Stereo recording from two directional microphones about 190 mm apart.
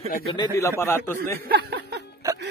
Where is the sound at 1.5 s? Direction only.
55° right (ahead or behind).